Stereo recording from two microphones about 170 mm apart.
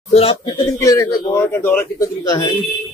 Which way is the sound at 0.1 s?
35° left (ahead or behind).